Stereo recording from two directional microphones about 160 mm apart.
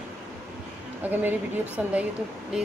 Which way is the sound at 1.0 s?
10° right (ahead or behind).